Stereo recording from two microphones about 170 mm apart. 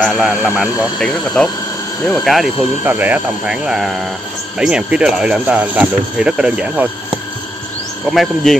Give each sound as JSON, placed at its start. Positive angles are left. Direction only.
{"t": 0.0, "sound": "speech", "side_deg": -5}
{"t": 8.1, "sound": "speech", "side_deg": 0}